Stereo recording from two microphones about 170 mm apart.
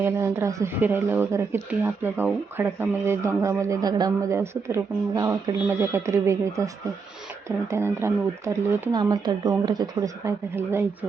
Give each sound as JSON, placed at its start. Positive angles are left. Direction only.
{"t": 0.0, "sound": "speech", "side_deg": -15}